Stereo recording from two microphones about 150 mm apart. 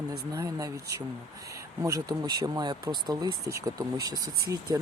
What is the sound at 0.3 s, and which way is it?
Speech, 20° right (ahead or behind).